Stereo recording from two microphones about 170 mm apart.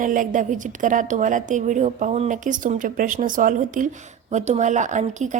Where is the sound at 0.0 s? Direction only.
50° right (ahead or behind).